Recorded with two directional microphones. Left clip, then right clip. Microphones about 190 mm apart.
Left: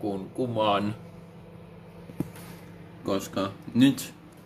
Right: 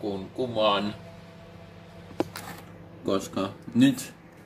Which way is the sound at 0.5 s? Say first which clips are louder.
Right 1 dB; 20° left (ahead or behind).